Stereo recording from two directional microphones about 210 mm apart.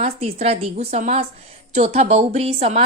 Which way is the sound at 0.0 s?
30° right (ahead or behind).